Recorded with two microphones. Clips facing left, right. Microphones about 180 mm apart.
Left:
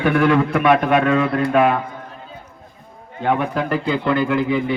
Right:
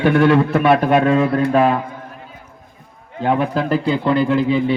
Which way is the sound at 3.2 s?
30° right (ahead or behind).